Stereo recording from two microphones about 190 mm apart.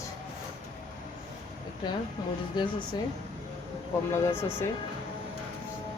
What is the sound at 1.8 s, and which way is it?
Speech, 25° left (ahead or behind).